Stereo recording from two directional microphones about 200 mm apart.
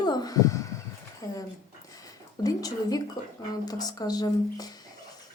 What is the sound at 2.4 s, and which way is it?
A woman's voice, 20° left (ahead or behind).